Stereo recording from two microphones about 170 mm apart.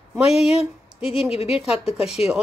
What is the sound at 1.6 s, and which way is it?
Speech, 5° right (ahead or behind).